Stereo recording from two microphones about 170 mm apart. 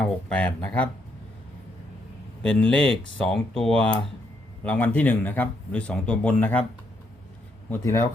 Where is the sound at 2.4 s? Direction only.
5° left (ahead or behind).